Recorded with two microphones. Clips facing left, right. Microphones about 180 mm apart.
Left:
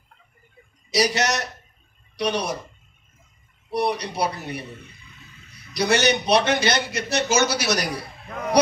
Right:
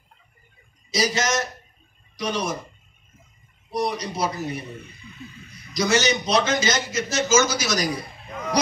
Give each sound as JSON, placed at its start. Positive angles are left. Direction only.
{"t": 0.9, "sound": "a man's voice", "side_deg": 70}
{"t": 3.7, "sound": "a man's voice", "side_deg": 65}
{"t": 5.7, "sound": "a man's voice", "side_deg": 60}